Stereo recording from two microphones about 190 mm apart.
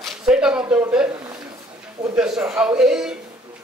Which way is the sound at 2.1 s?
5° right (ahead or behind).